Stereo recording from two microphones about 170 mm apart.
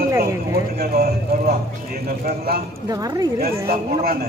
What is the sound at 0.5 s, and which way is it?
A man's voice, 65° right (ahead or behind).